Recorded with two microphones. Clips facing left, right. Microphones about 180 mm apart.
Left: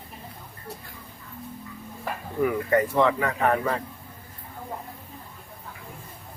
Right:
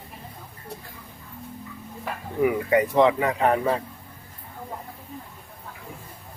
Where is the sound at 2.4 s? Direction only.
15° right (ahead or behind).